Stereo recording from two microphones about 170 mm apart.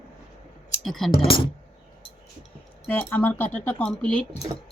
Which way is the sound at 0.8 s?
Centre (ahead or behind).